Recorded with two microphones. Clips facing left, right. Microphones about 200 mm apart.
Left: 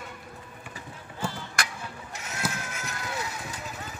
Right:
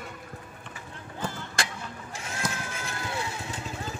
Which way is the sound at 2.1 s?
30° right (ahead or behind).